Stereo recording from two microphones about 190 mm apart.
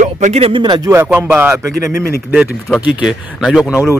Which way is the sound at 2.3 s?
Centre (ahead or behind).